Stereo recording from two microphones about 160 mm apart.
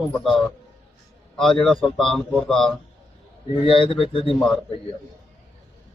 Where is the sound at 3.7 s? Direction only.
35° left (ahead or behind).